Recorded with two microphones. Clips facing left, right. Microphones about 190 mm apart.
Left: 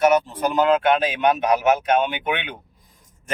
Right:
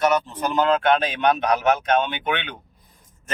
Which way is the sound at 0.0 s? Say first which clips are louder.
Left 3 dB; 10° left (ahead or behind).